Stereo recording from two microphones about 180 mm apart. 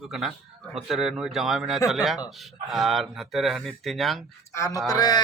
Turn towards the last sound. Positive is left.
turn(degrees=20)  # may be behind; listen again after turning